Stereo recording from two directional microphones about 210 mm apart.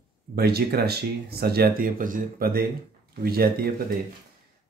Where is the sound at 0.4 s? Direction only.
50° right (ahead or behind).